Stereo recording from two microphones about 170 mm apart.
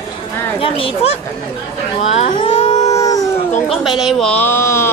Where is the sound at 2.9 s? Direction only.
20° left (ahead or behind).